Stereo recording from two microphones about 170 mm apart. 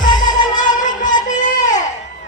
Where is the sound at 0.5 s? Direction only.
50° left (ahead or behind).